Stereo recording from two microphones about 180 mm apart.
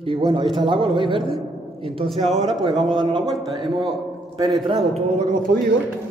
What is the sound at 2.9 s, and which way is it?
Speech, 25° right (ahead or behind).